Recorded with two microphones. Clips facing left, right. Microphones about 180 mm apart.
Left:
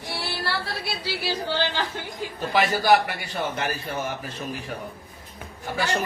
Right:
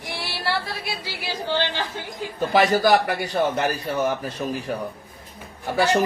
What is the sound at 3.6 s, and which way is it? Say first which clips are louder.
Speech: right 6 dB; 40° right (ahead or behind).